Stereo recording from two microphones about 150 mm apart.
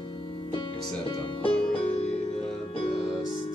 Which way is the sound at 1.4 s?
40° left (ahead or behind).